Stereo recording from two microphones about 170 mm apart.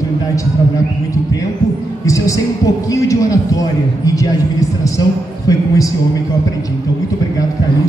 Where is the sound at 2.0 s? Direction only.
20° left (ahead or behind).